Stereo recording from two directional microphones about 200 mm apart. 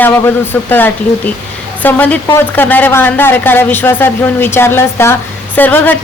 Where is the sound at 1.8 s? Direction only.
10° left (ahead or behind).